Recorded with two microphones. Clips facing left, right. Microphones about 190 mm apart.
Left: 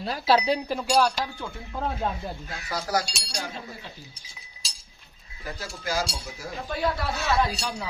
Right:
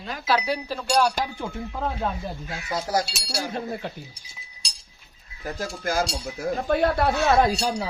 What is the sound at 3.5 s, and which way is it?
Speech, 60° right (ahead or behind).